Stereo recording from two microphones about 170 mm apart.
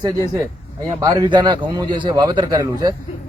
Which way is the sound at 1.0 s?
20° right (ahead or behind).